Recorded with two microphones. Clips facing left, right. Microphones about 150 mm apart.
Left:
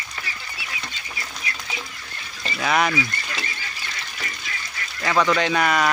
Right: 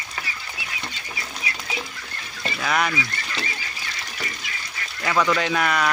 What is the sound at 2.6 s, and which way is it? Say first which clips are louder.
Speech: left 3 dB; 5° left (ahead or behind).